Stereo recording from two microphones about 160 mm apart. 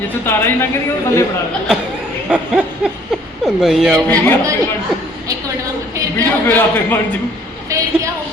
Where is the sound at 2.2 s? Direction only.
5° right (ahead or behind).